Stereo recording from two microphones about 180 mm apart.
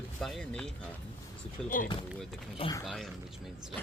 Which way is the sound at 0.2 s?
Centre (ahead or behind).